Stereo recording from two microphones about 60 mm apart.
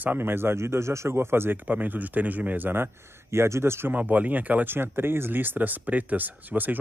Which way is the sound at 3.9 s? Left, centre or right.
Right.